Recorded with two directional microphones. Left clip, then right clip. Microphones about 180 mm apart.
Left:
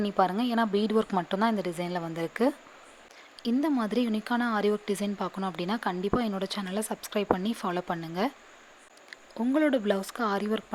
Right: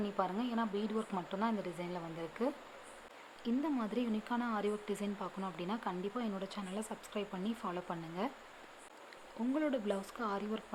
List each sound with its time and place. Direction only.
0.0 s speech: 45° left (ahead or behind)